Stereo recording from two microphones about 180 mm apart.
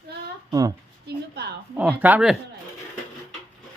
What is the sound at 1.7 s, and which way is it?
Speech, 10° right (ahead or behind).